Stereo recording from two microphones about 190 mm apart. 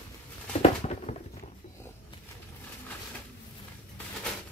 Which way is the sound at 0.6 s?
35° left (ahead or behind).